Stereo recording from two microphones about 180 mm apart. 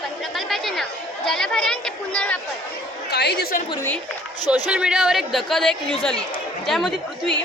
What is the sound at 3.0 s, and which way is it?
Speech, 65° left (ahead or behind).